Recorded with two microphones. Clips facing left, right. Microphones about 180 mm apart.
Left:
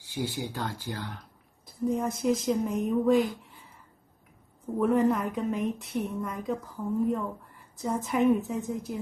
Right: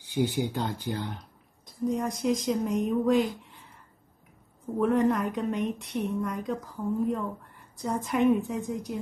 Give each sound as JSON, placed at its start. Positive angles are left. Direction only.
{"t": 0.0, "sound": "speech", "side_deg": -20}
{"t": 1.7, "sound": "a woman's voice", "side_deg": 0}
{"t": 4.7, "sound": "a woman's voice", "side_deg": 0}